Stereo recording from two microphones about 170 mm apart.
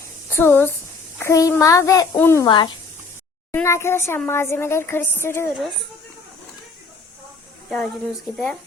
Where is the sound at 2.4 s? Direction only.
30° left (ahead or behind).